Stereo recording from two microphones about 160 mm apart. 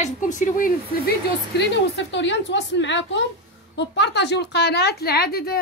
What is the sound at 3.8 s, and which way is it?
A woman's voice, 90° left.